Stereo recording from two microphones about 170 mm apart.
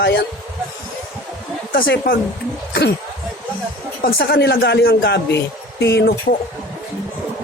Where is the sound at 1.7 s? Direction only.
65° left (ahead or behind).